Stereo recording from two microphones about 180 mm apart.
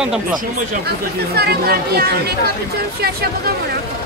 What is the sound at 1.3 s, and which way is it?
Speech, 60° right (ahead or behind).